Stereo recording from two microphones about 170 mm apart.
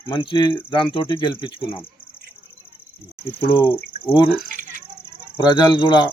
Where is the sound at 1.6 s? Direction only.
5° right (ahead or behind).